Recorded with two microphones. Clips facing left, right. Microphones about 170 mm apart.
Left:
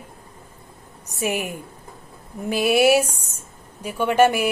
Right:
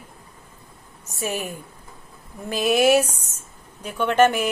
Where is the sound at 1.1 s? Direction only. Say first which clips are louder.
Left 3 dB; 15° left (ahead or behind).